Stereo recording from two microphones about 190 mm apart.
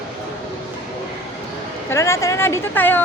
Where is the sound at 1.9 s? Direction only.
15° left (ahead or behind).